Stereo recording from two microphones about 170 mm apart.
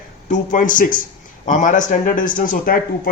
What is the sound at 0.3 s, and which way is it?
A man's voice, 50° left (ahead or behind).